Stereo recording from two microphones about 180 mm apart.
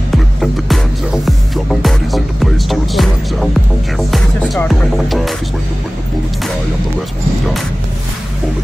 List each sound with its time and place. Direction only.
0.4 s music: centre (ahead or behind)